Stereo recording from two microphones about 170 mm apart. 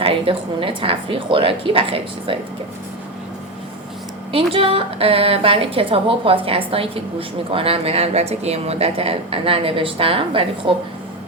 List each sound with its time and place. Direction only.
0.0 s a woman's voice: 30° right (ahead or behind)
4.3 s a woman's voice: 35° right (ahead or behind)